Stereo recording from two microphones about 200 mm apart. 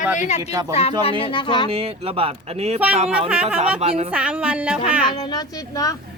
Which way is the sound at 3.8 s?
30° right (ahead or behind).